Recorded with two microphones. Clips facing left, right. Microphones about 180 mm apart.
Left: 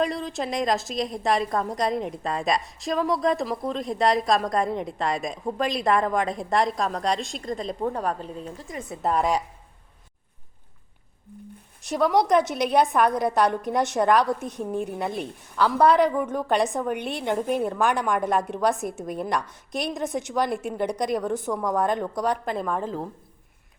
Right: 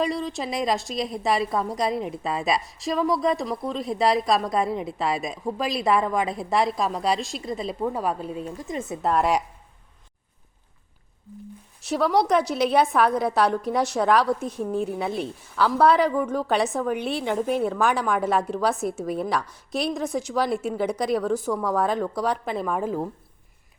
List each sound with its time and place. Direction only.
0.0 s a woman's voice: centre (ahead or behind)
8.6 s speech: 25° right (ahead or behind)
9.0 s a woman's voice: centre (ahead or behind)
11.9 s a woman's voice: centre (ahead or behind)
21.2 s a woman's voice: 20° left (ahead or behind)
21.7 s a woman's voice: centre (ahead or behind)